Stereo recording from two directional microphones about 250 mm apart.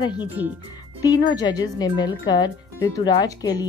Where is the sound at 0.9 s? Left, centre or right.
Centre.